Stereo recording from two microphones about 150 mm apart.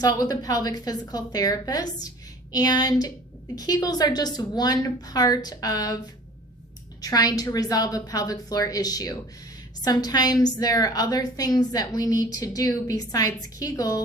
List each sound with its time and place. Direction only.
0.0 s a woman's voice: 25° left (ahead or behind)
7.0 s a woman's voice: 25° left (ahead or behind)